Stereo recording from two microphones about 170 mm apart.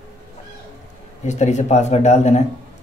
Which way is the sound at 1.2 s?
40° left (ahead or behind).